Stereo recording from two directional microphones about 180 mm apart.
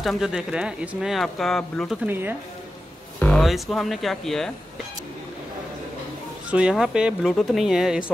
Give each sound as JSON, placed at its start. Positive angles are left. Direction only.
{"t": 0.0, "sound": "speech", "side_deg": 0}
{"t": 2.0, "sound": "speech", "side_deg": -10}
{"t": 3.2, "sound": "speech", "side_deg": 5}
{"t": 6.5, "sound": "speech", "side_deg": -5}